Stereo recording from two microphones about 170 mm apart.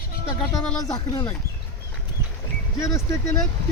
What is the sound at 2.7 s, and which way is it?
Speech, 15° left (ahead or behind).